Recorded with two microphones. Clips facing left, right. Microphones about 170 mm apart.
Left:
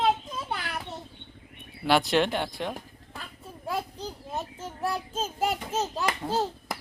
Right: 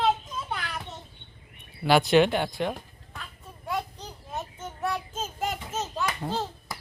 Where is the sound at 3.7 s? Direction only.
30° left (ahead or behind).